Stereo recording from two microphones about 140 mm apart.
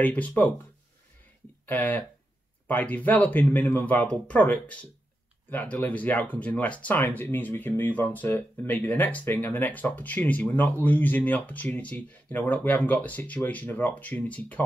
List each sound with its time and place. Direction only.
0.0 s speech: 10° left (ahead or behind)
1.7 s speech: 10° left (ahead or behind)